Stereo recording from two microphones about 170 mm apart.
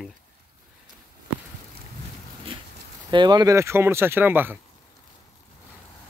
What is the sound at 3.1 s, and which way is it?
Speech, 25° right (ahead or behind).